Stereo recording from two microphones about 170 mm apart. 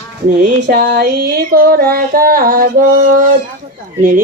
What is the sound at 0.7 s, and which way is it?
Music, 65° right (ahead or behind).